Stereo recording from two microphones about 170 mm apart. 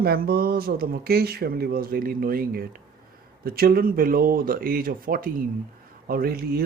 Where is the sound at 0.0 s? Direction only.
60° right (ahead or behind).